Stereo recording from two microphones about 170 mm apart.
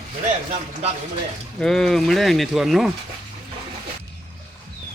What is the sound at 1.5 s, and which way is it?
Speech, centre (ahead or behind).